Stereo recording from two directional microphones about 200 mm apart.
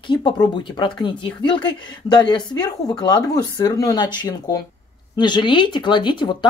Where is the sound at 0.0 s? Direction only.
25° left (ahead or behind).